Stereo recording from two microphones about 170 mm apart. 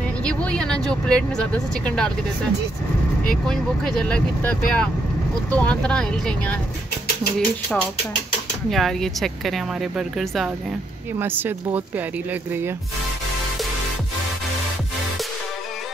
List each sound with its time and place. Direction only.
0.2 s speech: 5° left (ahead or behind)
3.3 s speech: 5° left (ahead or behind)
11.1 s speech: 10° right (ahead or behind)